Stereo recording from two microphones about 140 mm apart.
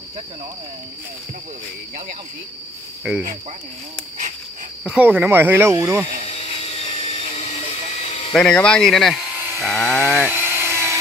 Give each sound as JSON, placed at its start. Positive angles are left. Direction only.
{"t": 3.0, "sound": "frog", "side_deg": -5}
{"t": 4.8, "sound": "speech", "side_deg": -10}
{"t": 6.3, "sound": "a sound", "side_deg": 45}
{"t": 8.3, "sound": "speech", "side_deg": 5}
{"t": 10.3, "sound": "dental drill", "side_deg": -15}